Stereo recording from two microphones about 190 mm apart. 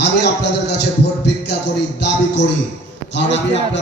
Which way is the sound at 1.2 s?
65° left (ahead or behind).